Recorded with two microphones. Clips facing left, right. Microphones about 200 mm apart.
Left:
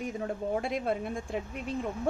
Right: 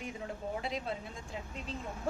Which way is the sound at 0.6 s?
55° left (ahead or behind).